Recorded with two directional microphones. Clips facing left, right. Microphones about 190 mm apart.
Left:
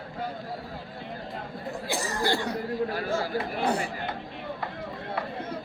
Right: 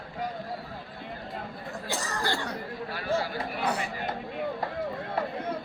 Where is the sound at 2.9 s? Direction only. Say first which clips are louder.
Left 2 dB; 35° left (ahead or behind).